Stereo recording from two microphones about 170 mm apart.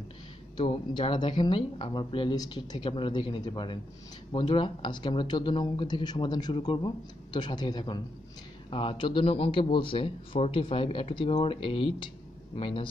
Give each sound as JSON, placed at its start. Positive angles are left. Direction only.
{"t": 0.6, "sound": "a man's voice", "side_deg": 35}